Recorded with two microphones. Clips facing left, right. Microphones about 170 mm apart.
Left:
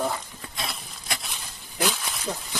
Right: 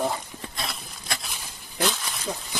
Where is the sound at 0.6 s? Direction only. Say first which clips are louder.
Left 1 dB; 5° left (ahead or behind).